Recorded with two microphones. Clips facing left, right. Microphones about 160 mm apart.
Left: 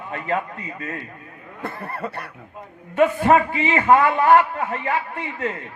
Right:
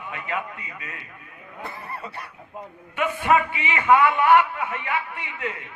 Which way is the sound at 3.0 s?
35° left (ahead or behind).